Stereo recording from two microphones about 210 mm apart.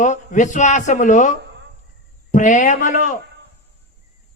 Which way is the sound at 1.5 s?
55° right (ahead or behind).